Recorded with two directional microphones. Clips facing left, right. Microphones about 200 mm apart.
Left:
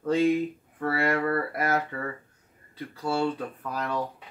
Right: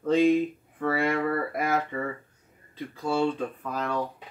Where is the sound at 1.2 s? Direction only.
Centre (ahead or behind).